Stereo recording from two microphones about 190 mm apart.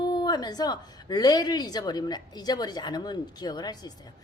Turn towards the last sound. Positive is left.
turn(degrees=20)  # may be behind; listen again after turning